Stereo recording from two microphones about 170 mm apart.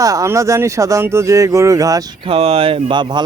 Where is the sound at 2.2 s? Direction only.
35° right (ahead or behind).